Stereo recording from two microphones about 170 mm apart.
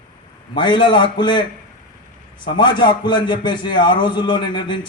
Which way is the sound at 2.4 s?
25° left (ahead or behind).